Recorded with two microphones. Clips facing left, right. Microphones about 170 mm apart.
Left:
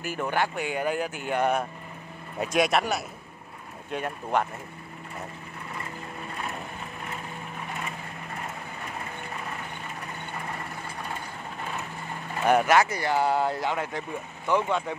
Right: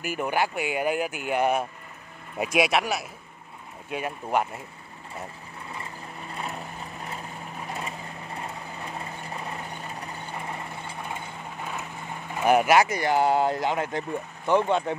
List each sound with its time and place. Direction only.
0.0 s speech: 15° right (ahead or behind)
12.4 s speech: 10° right (ahead or behind)